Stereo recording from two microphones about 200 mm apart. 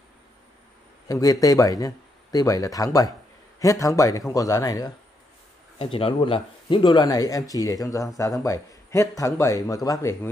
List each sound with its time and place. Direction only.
1.0 s a man's voice: 15° left (ahead or behind)
5.8 s speech: 30° left (ahead or behind)